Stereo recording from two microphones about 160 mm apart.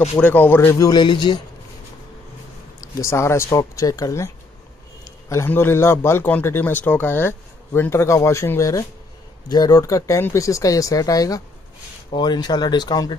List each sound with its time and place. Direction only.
0.2 s speech: 10° left (ahead or behind); by 1.4 s 30° left (ahead or behind)
2.8 s speech: 20° left (ahead or behind)
5.3 s a man's voice: 15° left (ahead or behind)